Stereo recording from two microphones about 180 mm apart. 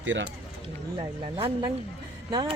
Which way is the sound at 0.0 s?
90° right.